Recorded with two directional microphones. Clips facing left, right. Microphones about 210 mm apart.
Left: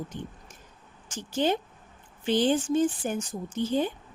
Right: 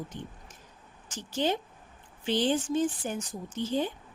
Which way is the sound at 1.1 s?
50° left (ahead or behind).